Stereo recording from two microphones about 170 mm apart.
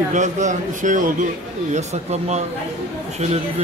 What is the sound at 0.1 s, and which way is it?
A man's voice, 45° right (ahead or behind).